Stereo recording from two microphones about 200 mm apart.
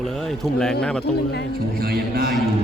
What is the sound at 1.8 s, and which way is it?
Speech, 50° right (ahead or behind).